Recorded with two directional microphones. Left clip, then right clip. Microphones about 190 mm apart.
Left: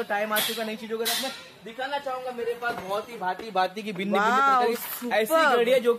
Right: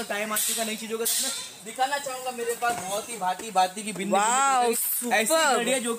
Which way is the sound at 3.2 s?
40° left (ahead or behind).